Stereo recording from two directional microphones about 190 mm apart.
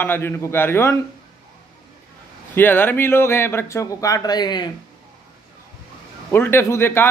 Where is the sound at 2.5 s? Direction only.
10° left (ahead or behind).